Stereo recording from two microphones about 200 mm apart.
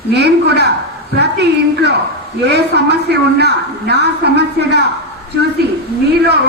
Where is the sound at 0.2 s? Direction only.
55° right (ahead or behind).